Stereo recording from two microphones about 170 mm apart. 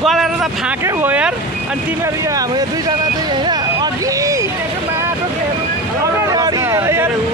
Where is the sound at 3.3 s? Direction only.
25° right (ahead or behind).